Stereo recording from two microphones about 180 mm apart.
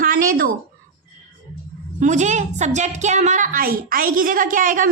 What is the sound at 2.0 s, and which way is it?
A woman's voice, 40° right (ahead or behind).